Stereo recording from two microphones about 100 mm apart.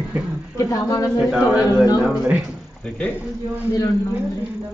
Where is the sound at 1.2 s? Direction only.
5° right (ahead or behind).